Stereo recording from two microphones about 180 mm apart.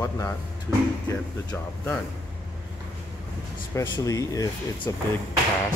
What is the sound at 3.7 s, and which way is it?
Speech, 20° left (ahead or behind).